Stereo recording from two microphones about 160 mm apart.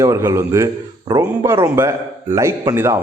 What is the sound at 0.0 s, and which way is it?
A man's voice, 20° right (ahead or behind).